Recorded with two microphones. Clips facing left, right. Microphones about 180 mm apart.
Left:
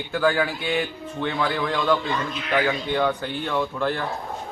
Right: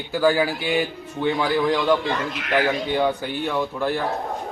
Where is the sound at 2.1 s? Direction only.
70° right (ahead or behind).